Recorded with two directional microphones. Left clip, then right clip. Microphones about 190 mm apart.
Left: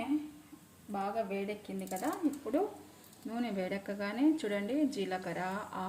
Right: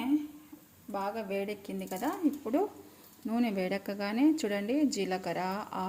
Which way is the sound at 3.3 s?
45° right (ahead or behind).